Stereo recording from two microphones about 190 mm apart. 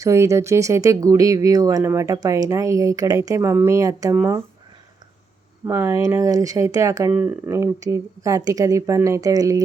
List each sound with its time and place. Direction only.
0.0 s speech: 15° right (ahead or behind)
5.6 s speech: 15° right (ahead or behind)